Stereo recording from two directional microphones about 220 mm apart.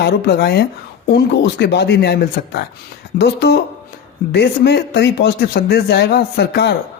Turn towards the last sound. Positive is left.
turn(degrees=50)  # may be behind; listen again after turning